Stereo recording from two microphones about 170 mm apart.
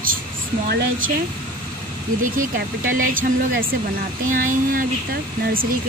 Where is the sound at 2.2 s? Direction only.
55° right (ahead or behind).